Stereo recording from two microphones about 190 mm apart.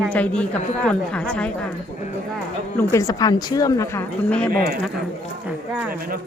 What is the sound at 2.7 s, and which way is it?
A woman's voice, 15° left (ahead or behind).